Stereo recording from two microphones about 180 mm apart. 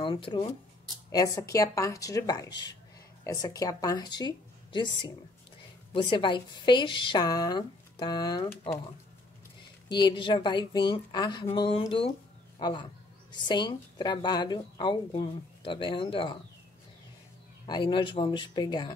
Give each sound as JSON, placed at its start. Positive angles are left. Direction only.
{"t": 0.0, "sound": "a woman's voice", "side_deg": 25}
{"t": 9.8, "sound": "a woman's voice", "side_deg": 25}
{"t": 17.6, "sound": "a woman's voice", "side_deg": 25}